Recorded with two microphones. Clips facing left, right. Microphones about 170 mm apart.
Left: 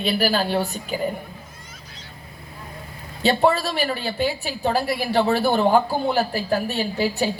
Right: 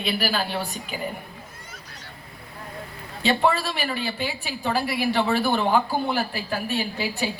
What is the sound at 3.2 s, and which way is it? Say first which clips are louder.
A woman's voice: left 3 dB; 40° left (ahead or behind).